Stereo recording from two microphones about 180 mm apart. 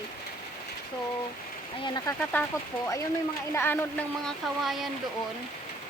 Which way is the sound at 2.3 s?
10° left (ahead or behind).